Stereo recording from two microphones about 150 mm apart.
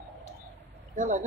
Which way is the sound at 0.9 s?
55° right (ahead or behind).